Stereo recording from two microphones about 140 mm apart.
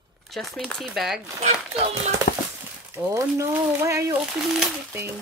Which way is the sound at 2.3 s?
70° left (ahead or behind).